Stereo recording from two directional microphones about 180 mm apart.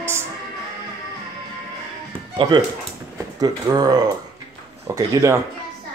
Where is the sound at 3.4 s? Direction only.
20° right (ahead or behind).